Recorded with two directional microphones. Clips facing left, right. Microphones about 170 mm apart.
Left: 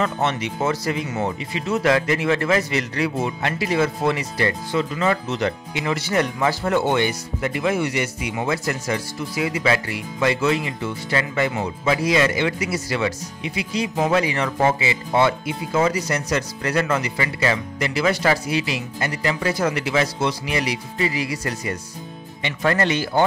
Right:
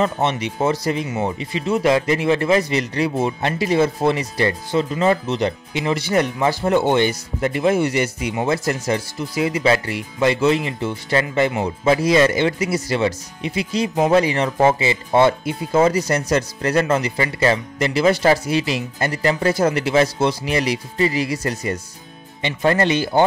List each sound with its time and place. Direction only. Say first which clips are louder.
0.0 s speech: right 3 dB; 20° right (ahead or behind)
5.2 s speech: right 2 dB; 20° right (ahead or behind)
7.1 s speech: right 3 dB; 35° right (ahead or behind)
12.0 s speech: right 3 dB; 35° right (ahead or behind)
16.3 s speech: right 3 dB; 40° right (ahead or behind)
16.8 s speech: right 3 dB; 30° right (ahead or behind)